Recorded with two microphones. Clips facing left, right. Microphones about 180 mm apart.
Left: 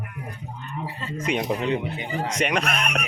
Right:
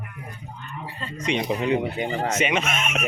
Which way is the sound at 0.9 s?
5° left (ahead or behind).